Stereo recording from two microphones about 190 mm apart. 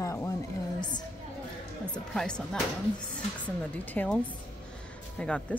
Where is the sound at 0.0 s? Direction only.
15° left (ahead or behind).